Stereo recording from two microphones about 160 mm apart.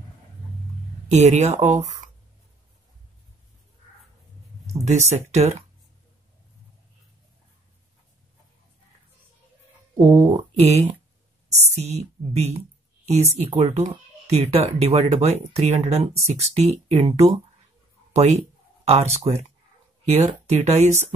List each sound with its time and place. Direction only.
1.0 s speech: 45° right (ahead or behind)
4.8 s speech: 45° right (ahead or behind)
10.3 s speech: 40° right (ahead or behind)
18.1 s speech: 45° right (ahead or behind)